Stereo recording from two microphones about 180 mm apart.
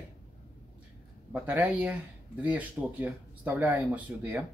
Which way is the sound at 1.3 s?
10° right (ahead or behind).